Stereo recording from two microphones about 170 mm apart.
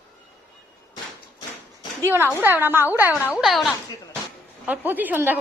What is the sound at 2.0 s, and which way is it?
A man's voice, 15° right (ahead or behind).